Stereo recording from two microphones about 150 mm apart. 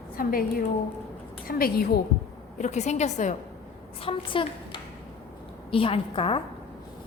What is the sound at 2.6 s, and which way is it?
Speech, 50° left (ahead or behind).